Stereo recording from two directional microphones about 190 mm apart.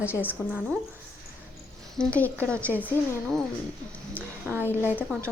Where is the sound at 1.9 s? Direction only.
10° left (ahead or behind).